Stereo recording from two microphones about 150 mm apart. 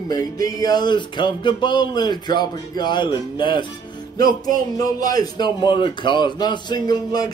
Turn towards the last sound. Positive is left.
turn(degrees=25)  # may be behind; listen again after turning